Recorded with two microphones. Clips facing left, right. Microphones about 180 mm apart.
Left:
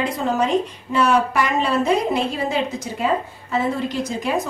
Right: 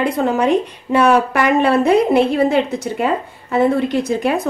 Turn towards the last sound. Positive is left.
turn(degrees=-60)  # may be behind; listen again after turning